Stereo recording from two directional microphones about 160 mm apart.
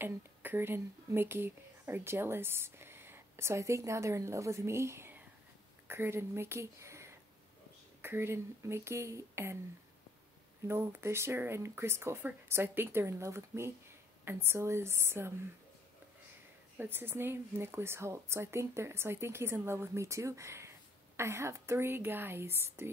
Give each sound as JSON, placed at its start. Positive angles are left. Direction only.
{"t": 0.0, "sound": "a woman's voice", "side_deg": -10}
{"t": 10.7, "sound": "a woman's voice", "side_deg": -15}
{"t": 16.7, "sound": "a woman's voice", "side_deg": -15}